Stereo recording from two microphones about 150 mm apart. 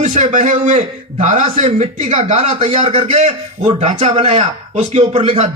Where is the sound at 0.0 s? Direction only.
50° right (ahead or behind).